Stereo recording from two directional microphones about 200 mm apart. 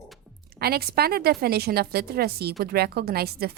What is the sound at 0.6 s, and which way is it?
A woman's voice, 50° right (ahead or behind).